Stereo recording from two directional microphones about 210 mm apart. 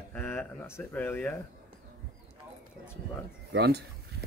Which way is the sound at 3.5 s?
50° right (ahead or behind).